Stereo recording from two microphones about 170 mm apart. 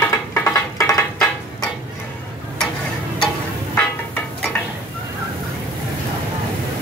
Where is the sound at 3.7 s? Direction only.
10° left (ahead or behind).